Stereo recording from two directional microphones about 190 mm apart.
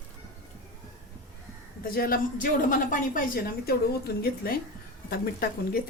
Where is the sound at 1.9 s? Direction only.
50° left (ahead or behind).